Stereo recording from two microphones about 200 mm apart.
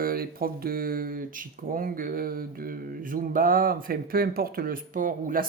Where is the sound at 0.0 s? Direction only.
50° right (ahead or behind).